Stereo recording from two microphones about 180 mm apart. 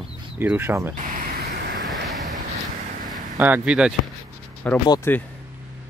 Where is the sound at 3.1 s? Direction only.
10° right (ahead or behind).